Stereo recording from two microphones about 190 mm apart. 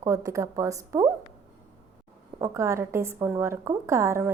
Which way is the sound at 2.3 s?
15° right (ahead or behind).